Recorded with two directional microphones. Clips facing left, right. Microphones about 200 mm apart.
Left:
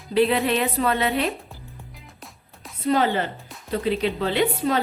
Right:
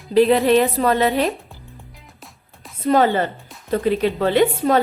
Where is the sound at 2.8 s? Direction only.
45° right (ahead or behind).